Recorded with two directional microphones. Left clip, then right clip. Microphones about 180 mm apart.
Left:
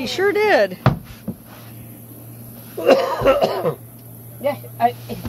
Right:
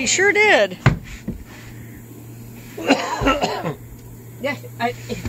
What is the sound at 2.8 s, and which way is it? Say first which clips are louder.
Speech: left 4 dB; 45° left (ahead or behind).